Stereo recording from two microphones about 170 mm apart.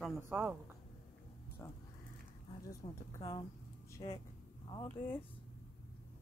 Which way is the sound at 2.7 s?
20° left (ahead or behind).